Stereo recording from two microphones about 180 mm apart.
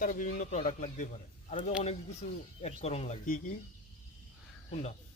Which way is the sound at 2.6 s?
35° left (ahead or behind).